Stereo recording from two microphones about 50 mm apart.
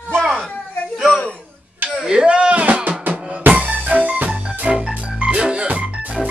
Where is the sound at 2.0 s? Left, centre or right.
Centre.